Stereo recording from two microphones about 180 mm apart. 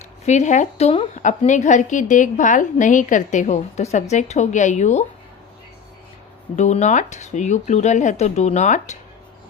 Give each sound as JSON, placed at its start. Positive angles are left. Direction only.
{"t": 0.3, "sound": "a woman's voice", "side_deg": 40}
{"t": 6.6, "sound": "a woman's voice", "side_deg": 40}